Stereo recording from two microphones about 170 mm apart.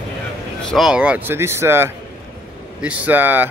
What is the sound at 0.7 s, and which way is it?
Speech, 5° right (ahead or behind).